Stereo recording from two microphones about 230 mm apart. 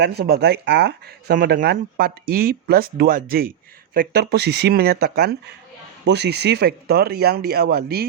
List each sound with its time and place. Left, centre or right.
0.0 s speech: right